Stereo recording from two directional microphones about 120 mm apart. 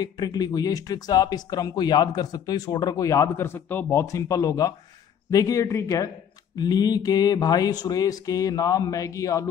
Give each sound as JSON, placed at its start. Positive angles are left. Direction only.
{"t": 0.0, "sound": "speech", "side_deg": 35}